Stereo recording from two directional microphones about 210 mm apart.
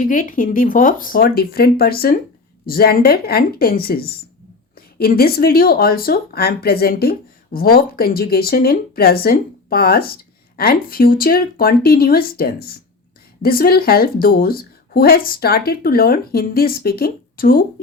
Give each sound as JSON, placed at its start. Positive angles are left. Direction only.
{"t": 0.0, "sound": "speech", "side_deg": 40}